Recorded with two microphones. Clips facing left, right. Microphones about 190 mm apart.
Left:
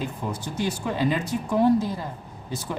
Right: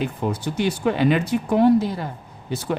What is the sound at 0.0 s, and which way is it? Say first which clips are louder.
Speech: right 6 dB; 65° right (ahead or behind).